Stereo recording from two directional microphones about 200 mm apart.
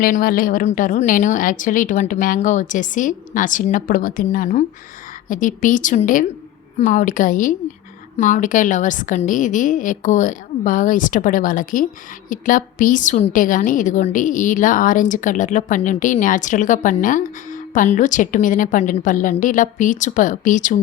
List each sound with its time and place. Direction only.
0.0 s a woman's voice: 45° left (ahead or behind)